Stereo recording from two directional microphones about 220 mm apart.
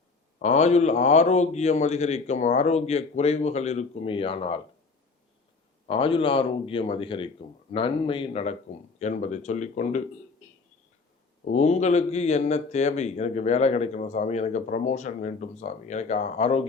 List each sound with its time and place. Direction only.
0.4 s a man's voice: 30° left (ahead or behind)
5.9 s a man's voice: 25° left (ahead or behind)
11.4 s a man's voice: 30° left (ahead or behind)